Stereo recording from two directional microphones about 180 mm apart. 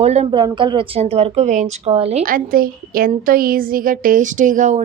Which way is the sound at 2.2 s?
50° right (ahead or behind).